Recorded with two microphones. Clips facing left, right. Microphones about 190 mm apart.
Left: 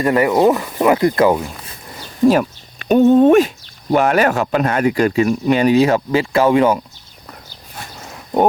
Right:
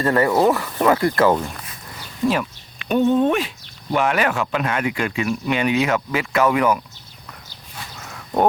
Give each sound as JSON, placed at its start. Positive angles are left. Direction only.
{"t": 0.0, "sound": "speech", "side_deg": 15}
{"t": 2.2, "sound": "speech", "side_deg": 45}
{"t": 7.9, "sound": "a sound", "side_deg": 30}